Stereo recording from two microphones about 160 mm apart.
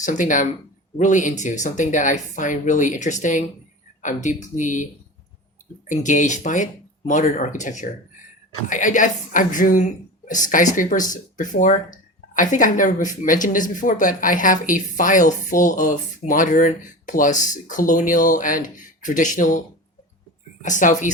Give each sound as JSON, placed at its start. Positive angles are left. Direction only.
{"t": 0.0, "sound": "a woman's voice", "side_deg": 50}
{"t": 5.9, "sound": "a woman's voice", "side_deg": 50}
{"t": 20.7, "sound": "a woman's voice", "side_deg": 50}